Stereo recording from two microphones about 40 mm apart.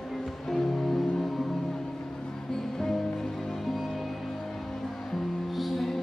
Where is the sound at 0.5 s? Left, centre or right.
Centre.